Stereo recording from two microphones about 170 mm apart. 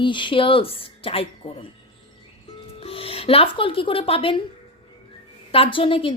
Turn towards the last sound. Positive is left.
turn(degrees=30)  # may be behind; listen again after turning